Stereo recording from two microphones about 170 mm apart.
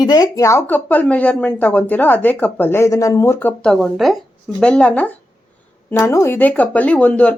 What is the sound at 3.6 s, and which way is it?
A woman's voice, 5° left (ahead or behind).